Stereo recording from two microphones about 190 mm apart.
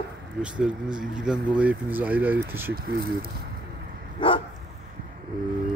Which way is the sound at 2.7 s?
55° right (ahead or behind).